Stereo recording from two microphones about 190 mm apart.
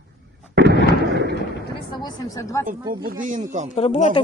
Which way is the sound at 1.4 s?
65° left (ahead or behind).